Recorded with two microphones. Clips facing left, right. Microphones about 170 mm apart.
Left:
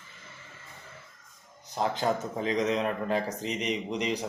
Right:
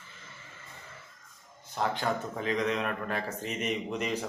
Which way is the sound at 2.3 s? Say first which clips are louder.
Left 2 dB; 20° left (ahead or behind).